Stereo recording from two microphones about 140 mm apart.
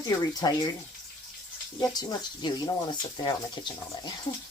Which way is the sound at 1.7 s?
30° left (ahead or behind).